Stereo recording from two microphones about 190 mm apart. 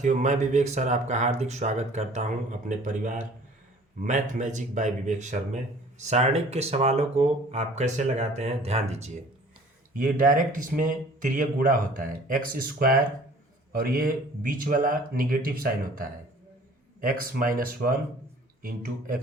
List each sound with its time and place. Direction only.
0.0 s speech: 40° right (ahead or behind)
9.9 s speech: 45° right (ahead or behind)